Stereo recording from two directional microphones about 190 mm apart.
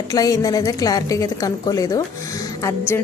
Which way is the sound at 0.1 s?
20° left (ahead or behind).